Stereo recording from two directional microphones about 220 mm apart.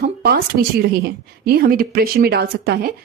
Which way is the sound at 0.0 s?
45° right (ahead or behind).